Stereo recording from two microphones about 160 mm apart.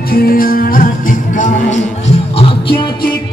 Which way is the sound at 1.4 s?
50° left (ahead or behind).